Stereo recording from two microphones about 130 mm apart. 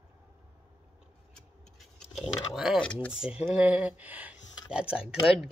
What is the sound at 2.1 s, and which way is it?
Speech, 5° right (ahead or behind).